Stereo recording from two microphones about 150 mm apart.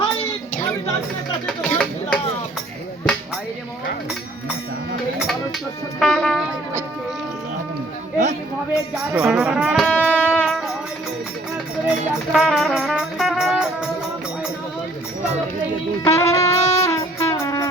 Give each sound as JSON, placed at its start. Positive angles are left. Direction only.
{"t": 1.5, "sound": "a sound", "side_deg": 5}
{"t": 6.0, "sound": "music", "side_deg": 5}
{"t": 8.7, "sound": "speech", "side_deg": -5}
{"t": 9.8, "sound": "music", "side_deg": 10}
{"t": 11.9, "sound": "music", "side_deg": -5}
{"t": 16.0, "sound": "music", "side_deg": 20}
{"t": 16.4, "sound": "wind instrument", "side_deg": 20}